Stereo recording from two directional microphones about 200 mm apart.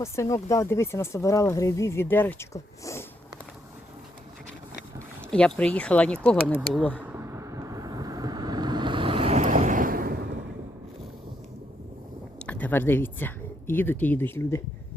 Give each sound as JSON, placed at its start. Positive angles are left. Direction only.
{"t": 0.0, "sound": "speech", "side_deg": 15}
{"t": 5.3, "sound": "speech", "side_deg": 5}
{"t": 7.0, "sound": "vehicle", "side_deg": -10}
{"t": 12.4, "sound": "speech", "side_deg": 5}